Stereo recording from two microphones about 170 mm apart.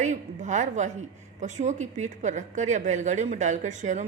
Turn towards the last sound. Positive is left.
turn(degrees=-45)  # may be behind; listen again after turning